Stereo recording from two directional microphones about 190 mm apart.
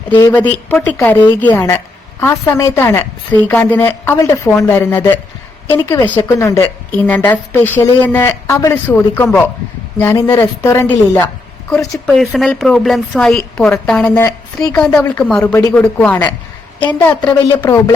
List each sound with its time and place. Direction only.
0.2 s a woman's voice: 10° left (ahead or behind)
15.2 s a woman's voice: 5° left (ahead or behind)